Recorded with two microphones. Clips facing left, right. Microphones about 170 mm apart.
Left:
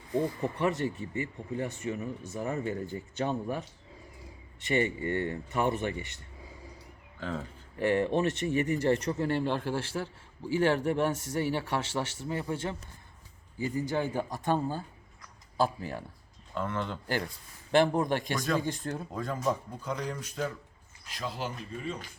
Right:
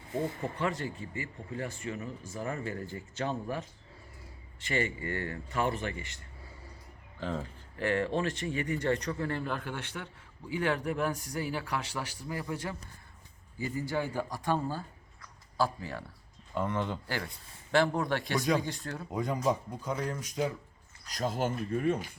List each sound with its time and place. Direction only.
0.4 s a man's voice: 20° left (ahead or behind)
4.7 s speech: 25° left (ahead or behind)
7.2 s speech: centre (ahead or behind)
7.8 s a man's voice: 20° left (ahead or behind)
13.7 s a man's voice: 20° left (ahead or behind)
16.6 s speech: 10° right (ahead or behind)
17.7 s a man's voice: 20° left (ahead or behind)
19.1 s speech: 15° right (ahead or behind)
21.1 s speech: 45° right (ahead or behind)